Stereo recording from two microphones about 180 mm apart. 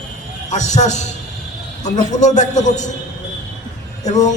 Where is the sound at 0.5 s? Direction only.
40° left (ahead or behind).